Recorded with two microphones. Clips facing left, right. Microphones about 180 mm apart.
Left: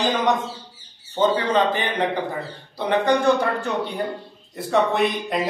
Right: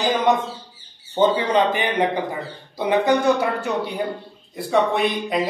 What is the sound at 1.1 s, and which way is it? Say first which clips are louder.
A man's voice: right 2 dB; 10° right (ahead or behind).